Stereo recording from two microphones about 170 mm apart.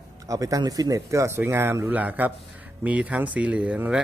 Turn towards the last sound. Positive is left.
turn(degrees=-10)  # may be behind; listen again after turning